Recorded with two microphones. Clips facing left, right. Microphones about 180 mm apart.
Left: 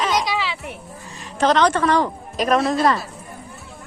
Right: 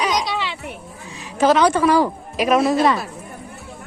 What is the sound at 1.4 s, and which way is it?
A woman's voice, 5° right (ahead or behind).